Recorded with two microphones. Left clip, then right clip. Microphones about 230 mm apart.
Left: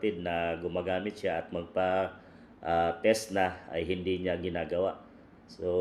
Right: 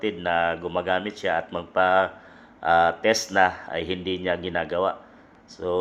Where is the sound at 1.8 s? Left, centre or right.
Right.